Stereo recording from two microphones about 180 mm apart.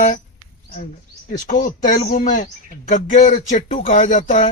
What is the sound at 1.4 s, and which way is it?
Speech, 45° left (ahead or behind).